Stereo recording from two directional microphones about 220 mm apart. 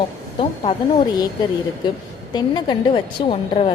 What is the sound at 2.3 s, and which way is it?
A woman's voice, 20° left (ahead or behind).